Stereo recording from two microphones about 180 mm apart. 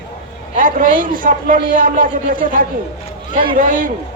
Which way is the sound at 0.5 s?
50° right (ahead or behind).